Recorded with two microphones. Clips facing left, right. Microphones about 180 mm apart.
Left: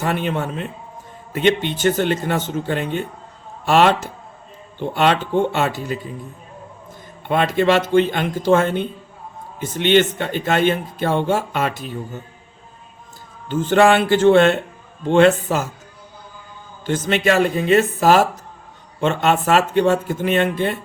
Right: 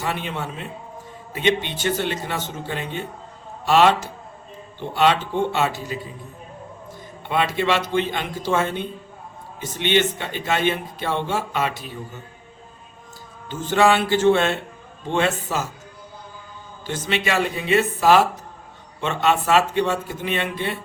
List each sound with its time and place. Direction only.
0.0 s speech: 50° left (ahead or behind)
7.3 s speech: 50° left (ahead or behind)
13.5 s speech: 55° left (ahead or behind)
16.8 s speech: 50° left (ahead or behind)